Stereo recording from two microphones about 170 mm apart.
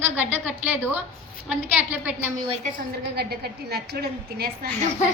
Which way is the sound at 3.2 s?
70° right (ahead or behind).